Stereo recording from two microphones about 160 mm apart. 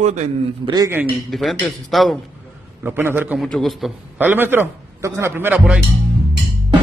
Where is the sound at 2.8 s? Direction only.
15° right (ahead or behind).